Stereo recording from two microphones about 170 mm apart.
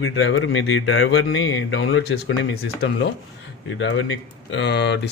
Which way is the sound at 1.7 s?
90° left.